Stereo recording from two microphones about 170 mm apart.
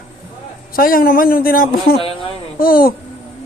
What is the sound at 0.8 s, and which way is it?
Speech, 55° left (ahead or behind).